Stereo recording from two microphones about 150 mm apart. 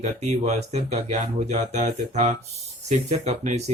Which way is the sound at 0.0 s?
50° right (ahead or behind).